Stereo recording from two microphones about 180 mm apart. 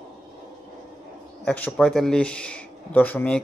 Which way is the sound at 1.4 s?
5° left (ahead or behind).